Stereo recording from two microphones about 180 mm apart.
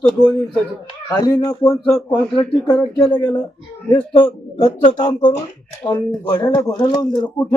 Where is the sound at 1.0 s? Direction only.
20° left (ahead or behind).